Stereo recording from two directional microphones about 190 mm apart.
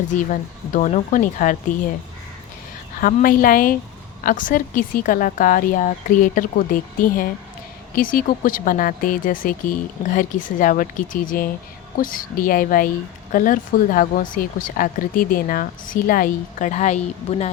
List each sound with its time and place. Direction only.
0.1 s speech: 40° left (ahead or behind)
3.0 s speech: 45° left (ahead or behind)